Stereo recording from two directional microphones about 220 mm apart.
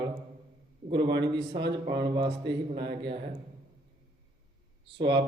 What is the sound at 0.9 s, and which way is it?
A man's voice, 20° right (ahead or behind).